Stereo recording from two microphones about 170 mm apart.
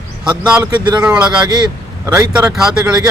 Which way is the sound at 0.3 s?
5° right (ahead or behind).